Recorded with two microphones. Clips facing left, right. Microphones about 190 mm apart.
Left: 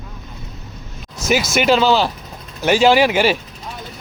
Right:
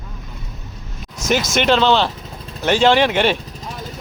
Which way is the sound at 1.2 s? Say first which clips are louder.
Left 1 dB; 5° left (ahead or behind).